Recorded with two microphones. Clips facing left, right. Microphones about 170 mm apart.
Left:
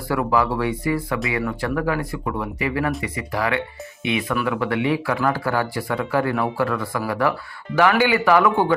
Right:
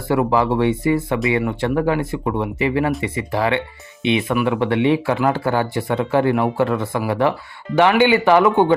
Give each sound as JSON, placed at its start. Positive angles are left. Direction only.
{"t": 0.1, "sound": "speech", "side_deg": -25}